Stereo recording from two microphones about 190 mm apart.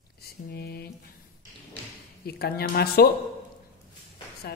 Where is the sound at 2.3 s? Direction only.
55° left (ahead or behind).